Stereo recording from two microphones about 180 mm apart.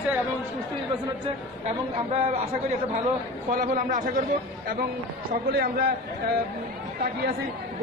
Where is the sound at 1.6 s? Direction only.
35° right (ahead or behind).